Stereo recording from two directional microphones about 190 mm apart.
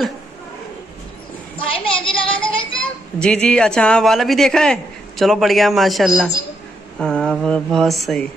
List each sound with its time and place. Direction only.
1.7 s a child's voice: 25° left (ahead or behind)
3.2 s a man's voice: 5° left (ahead or behind)